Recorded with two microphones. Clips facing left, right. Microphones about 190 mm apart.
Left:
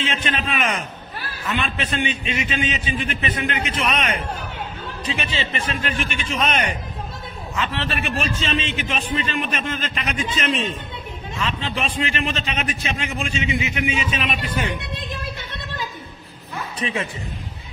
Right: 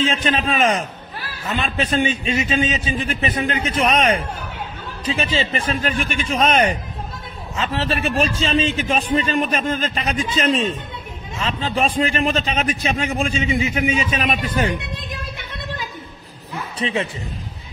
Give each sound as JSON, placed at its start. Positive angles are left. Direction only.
{"t": 0.0, "sound": "a man's voice", "side_deg": -35}
{"t": 16.8, "sound": "a man's voice", "side_deg": -25}